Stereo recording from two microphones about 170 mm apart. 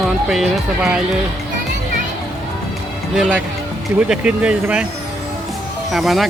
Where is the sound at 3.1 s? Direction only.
5° right (ahead or behind).